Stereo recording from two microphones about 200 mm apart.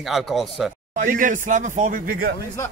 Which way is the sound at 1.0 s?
40° right (ahead or behind).